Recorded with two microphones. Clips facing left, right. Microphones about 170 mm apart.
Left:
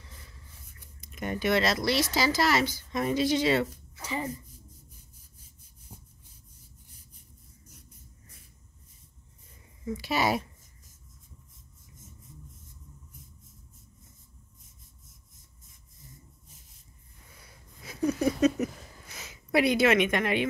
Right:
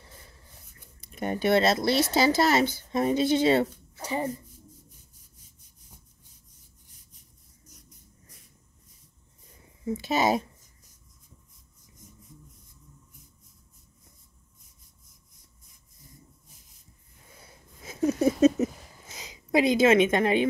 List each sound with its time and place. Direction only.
1.0 s a woman's voice: 35° right (ahead or behind)
9.8 s speech: 25° right (ahead or behind)
17.4 s a sound: 25° right (ahead or behind)